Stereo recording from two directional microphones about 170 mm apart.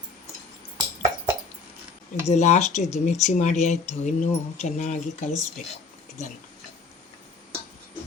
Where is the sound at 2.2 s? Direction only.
40° left (ahead or behind).